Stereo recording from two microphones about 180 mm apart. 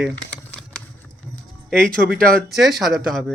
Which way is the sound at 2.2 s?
50° right (ahead or behind).